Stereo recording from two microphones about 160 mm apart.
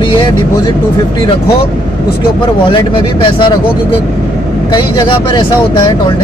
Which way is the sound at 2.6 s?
30° left (ahead or behind).